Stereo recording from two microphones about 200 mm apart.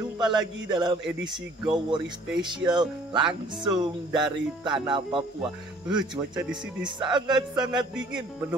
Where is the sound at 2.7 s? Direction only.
20° right (ahead or behind).